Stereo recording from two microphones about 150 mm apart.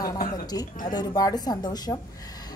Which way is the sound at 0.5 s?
25° left (ahead or behind).